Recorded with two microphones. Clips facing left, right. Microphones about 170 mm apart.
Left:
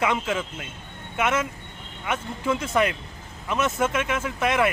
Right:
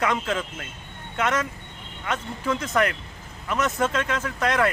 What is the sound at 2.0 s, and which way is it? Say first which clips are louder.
A man's voice: left 1 dB; 10° left (ahead or behind).